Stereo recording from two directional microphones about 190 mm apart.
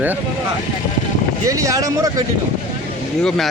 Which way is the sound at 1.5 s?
15° right (ahead or behind).